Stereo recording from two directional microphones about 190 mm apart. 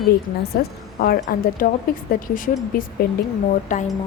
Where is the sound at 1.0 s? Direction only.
55° left (ahead or behind).